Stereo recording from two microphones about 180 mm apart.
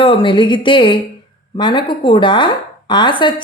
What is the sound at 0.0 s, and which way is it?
A woman's voice, 30° left (ahead or behind).